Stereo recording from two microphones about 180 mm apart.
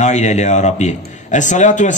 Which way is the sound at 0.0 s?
40° left (ahead or behind).